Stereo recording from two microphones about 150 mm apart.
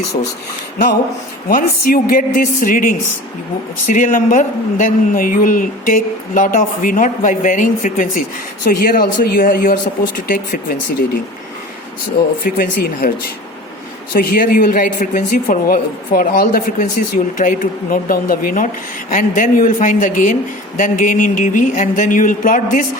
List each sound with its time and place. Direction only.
1.5 s a woman's voice: 70° left (ahead or behind)
12.5 s a woman's voice: 80° left
14.1 s a woman's voice: 75° left (ahead or behind); by 22.9 s 60° left (ahead or behind)